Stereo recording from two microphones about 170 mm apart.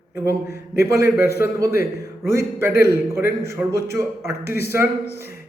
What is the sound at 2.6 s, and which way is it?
A man's voice, 15° right (ahead or behind).